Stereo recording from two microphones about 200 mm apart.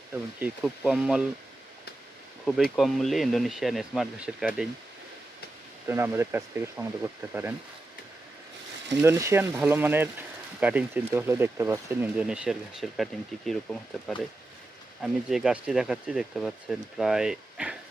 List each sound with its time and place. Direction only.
0.1 s speech: 10° right (ahead or behind)
2.6 s speech: centre (ahead or behind)
5.9 s speech: 10° right (ahead or behind)
9.0 s speech: 15° right (ahead or behind)